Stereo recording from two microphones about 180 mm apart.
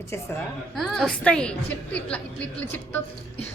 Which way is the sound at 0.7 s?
Centre (ahead or behind).